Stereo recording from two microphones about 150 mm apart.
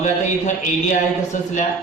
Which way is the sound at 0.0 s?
55° left (ahead or behind).